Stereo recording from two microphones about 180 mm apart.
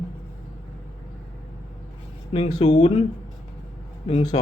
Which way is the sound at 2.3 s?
35° left (ahead or behind).